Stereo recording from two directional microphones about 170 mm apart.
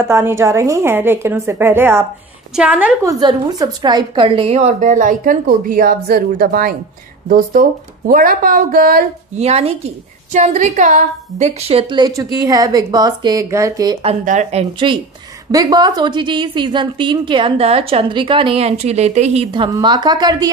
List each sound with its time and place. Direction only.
0.0 s a woman's voice: 15° right (ahead or behind)
3.0 s a woman's voice: 20° right (ahead or behind); by 9.0 s 55° right (ahead or behind)
9.4 s a woman's voice: 35° right (ahead or behind); by 13.9 s 20° right (ahead or behind)
14.2 s speech: 45° right (ahead or behind)
15.5 s a woman's voice: 20° right (ahead or behind)